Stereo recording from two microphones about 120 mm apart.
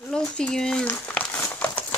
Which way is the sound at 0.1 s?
5° left (ahead or behind).